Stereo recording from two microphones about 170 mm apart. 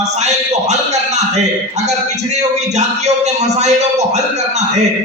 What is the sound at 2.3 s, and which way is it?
A man's voice, 40° right (ahead or behind).